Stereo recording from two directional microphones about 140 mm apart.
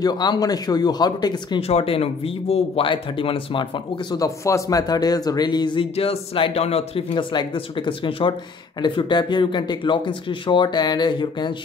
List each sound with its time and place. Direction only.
0.0 s speech: 30° left (ahead or behind)
1.6 s speech: 45° left (ahead or behind)
4.2 s a man's voice: 25° left (ahead or behind)